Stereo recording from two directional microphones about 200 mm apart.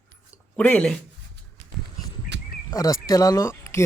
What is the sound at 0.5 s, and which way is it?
Speech, 5° left (ahead or behind).